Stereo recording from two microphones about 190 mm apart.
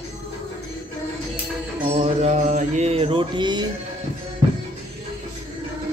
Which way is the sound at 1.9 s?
35° right (ahead or behind).